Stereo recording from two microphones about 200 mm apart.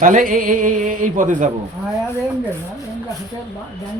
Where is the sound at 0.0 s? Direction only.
40° right (ahead or behind).